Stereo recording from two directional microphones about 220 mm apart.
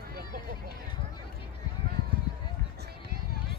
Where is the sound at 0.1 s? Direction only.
40° right (ahead or behind).